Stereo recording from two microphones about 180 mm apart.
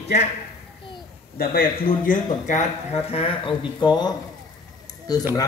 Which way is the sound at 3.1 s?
30° left (ahead or behind).